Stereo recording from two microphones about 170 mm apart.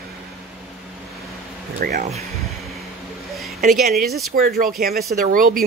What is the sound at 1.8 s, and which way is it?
Speech, 60° right (ahead or behind).